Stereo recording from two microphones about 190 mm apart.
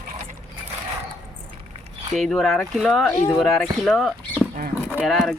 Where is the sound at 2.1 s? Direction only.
Centre (ahead or behind).